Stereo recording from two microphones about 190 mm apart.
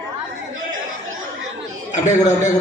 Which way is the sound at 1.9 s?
40° left (ahead or behind).